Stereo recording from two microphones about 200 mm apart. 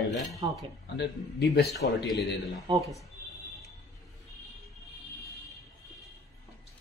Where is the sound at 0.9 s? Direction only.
55° left (ahead or behind).